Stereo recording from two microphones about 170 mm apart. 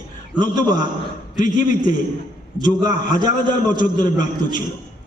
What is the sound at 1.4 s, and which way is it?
Speech, 50° left (ahead or behind).